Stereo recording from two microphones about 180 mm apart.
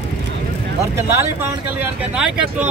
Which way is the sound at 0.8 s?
15° right (ahead or behind).